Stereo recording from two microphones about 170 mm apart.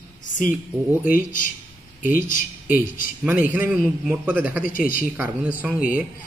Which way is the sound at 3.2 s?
10° right (ahead or behind).